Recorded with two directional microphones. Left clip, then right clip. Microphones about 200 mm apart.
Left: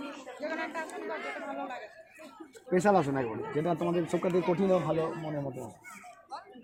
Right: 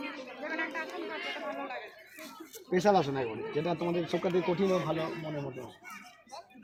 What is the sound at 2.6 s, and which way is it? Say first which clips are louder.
Speech: left 1 dB; 35° left (ahead or behind).